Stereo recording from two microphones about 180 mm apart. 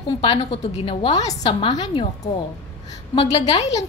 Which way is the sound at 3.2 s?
35° left (ahead or behind).